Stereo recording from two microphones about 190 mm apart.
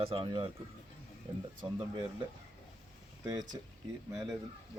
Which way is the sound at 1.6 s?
20° right (ahead or behind).